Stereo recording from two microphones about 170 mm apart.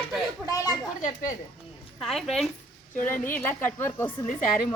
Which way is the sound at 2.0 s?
Centre (ahead or behind).